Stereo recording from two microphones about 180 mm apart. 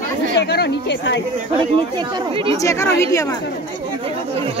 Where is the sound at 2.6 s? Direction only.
15° left (ahead or behind).